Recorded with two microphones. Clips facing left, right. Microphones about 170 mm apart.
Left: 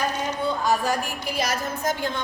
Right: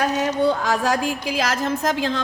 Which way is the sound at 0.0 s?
80° right.